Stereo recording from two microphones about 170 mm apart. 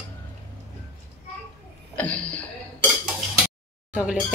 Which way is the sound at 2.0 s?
5° left (ahead or behind).